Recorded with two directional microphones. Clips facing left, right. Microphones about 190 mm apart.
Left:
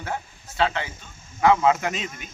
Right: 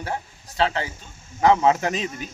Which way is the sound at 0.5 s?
35° right (ahead or behind).